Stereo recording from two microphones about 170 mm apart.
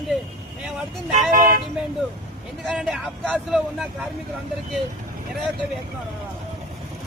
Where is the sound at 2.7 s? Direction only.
5° right (ahead or behind).